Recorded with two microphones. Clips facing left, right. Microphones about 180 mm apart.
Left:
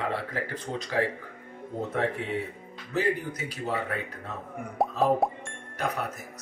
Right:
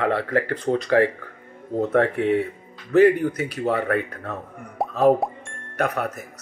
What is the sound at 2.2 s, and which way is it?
Speech, 65° right (ahead or behind).